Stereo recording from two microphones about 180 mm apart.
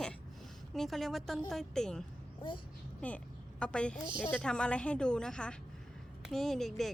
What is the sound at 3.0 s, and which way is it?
A woman's voice, 10° left (ahead or behind).